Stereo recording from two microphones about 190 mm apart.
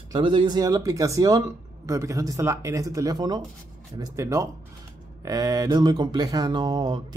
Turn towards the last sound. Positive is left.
turn(degrees=-25)  # may be behind; listen again after turning